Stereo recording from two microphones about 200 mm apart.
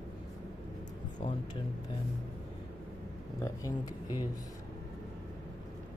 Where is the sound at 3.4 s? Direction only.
15° left (ahead or behind).